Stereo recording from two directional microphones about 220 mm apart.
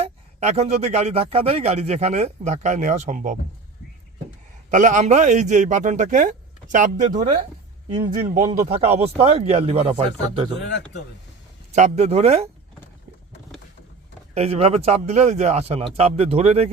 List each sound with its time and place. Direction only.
0.0 s a man's voice: 30° right (ahead or behind)
4.7 s a man's voice: 35° right (ahead or behind)
10.6 s a man's voice: 50° left (ahead or behind)
11.7 s a man's voice: 30° right (ahead or behind)
14.3 s a man's voice: 30° right (ahead or behind)